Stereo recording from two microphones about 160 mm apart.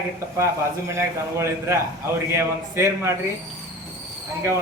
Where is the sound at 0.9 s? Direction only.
15° right (ahead or behind).